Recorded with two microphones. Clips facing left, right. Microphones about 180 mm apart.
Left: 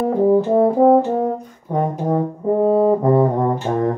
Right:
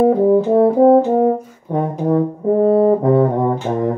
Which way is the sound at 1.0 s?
20° right (ahead or behind).